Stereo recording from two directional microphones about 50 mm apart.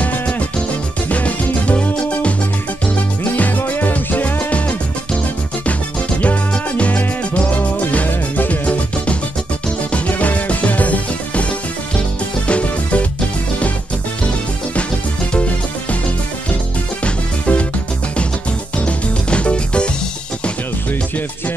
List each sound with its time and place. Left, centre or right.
0.0 s music: left
3.3 s music: left
6.2 s music: left
12.4 s music: left
15.3 s music: left
17.0 s music: left
18.9 s music: left